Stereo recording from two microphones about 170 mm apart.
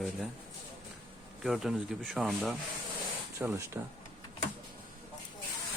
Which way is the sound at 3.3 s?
20° right (ahead or behind).